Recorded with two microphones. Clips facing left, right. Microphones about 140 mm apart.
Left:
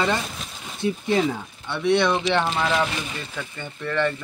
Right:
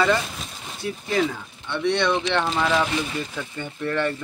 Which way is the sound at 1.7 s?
5° left (ahead or behind).